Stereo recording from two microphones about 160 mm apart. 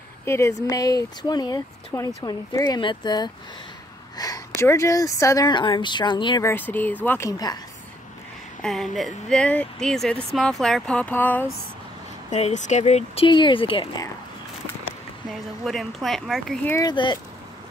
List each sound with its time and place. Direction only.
0.2 s speech: 15° left (ahead or behind)
6.4 s speech: 10° left (ahead or behind)
8.6 s speech: centre (ahead or behind)
12.3 s speech: 45° left (ahead or behind)
15.6 s speech: centre (ahead or behind)
16.7 s speech: 25° left (ahead or behind)